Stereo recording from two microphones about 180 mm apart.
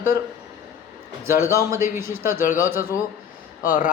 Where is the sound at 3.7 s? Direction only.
50° left (ahead or behind).